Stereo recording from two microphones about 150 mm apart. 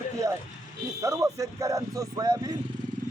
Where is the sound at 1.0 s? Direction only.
20° right (ahead or behind).